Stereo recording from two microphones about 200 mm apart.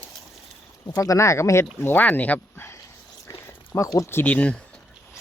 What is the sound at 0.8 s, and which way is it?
Speech, 15° left (ahead or behind).